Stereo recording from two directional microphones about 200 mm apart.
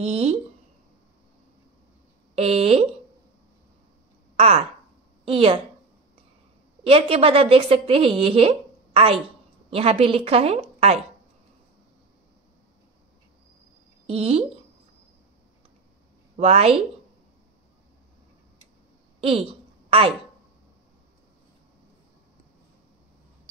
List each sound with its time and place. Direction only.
0.0 s a woman's voice: 30° right (ahead or behind)
2.3 s speech: 30° right (ahead or behind)
4.4 s a woman's voice: 30° right (ahead or behind)
6.8 s a woman's voice: 30° right (ahead or behind)
14.0 s speech: 30° right (ahead or behind)
16.3 s a woman's voice: 30° right (ahead or behind)
19.2 s a sound: 30° right (ahead or behind)